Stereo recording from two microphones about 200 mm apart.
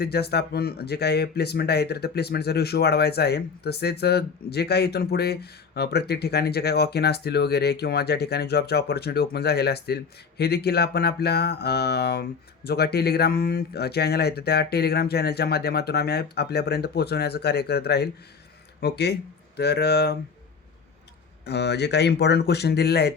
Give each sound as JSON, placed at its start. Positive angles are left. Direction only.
{"t": 0.0, "sound": "speech", "side_deg": 55}
{"t": 21.4, "sound": "speech", "side_deg": 55}